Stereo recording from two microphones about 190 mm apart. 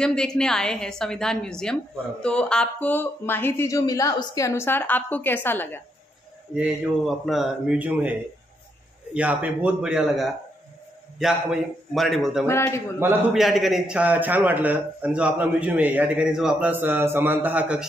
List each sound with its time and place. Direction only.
0.0 s a woman's voice: 5° left (ahead or behind)
6.5 s a woman's voice: 5° right (ahead or behind)
12.4 s speech: 15° left (ahead or behind)
13.0 s a man's voice: centre (ahead or behind)